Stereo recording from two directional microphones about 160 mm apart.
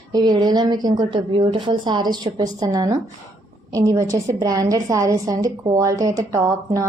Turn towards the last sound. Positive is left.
turn(degrees=-20)  # may be behind; listen again after turning